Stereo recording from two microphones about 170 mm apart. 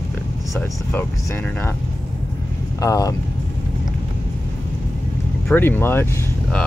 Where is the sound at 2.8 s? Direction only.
20° left (ahead or behind).